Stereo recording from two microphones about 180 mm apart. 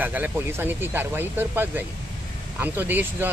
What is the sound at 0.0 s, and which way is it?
Speech, 10° right (ahead or behind).